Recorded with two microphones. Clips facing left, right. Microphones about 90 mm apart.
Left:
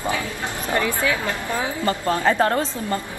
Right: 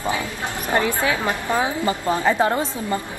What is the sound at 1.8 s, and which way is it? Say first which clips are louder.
A woman's voice: left 4 dB; 15° right (ahead or behind).